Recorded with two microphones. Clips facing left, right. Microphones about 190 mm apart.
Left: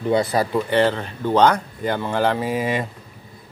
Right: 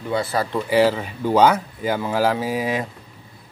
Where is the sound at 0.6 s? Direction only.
5° right (ahead or behind).